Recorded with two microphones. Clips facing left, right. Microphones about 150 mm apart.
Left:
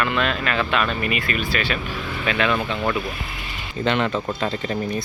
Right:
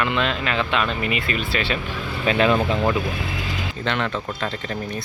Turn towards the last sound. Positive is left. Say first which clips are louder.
# left 3 dB
turn(degrees=5)  # may be behind; listen again after turning